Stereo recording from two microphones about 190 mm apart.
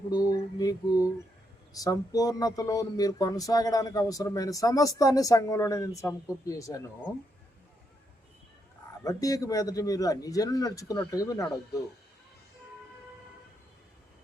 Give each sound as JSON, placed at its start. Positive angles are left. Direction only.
{"t": 0.1, "sound": "a man's voice", "side_deg": 20}
{"t": 1.7, "sound": "a sound", "side_deg": 20}
{"t": 9.0, "sound": "a man's voice", "side_deg": 20}